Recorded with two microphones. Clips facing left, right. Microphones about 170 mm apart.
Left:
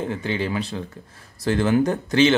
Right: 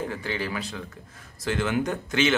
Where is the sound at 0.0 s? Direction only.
20° left (ahead or behind).